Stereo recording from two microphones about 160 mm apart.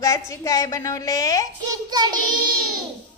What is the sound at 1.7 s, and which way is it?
Child singing, 25° right (ahead or behind).